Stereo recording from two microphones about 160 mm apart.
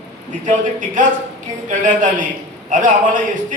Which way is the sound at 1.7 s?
55° right (ahead or behind).